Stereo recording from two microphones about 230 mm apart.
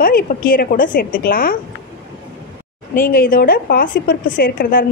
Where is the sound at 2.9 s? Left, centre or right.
Left.